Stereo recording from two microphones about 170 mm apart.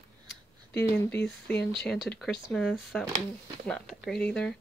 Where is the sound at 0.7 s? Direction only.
5° left (ahead or behind).